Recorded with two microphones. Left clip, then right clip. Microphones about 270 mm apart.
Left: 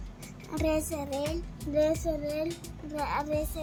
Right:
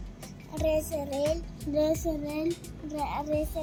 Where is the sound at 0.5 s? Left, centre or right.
Left.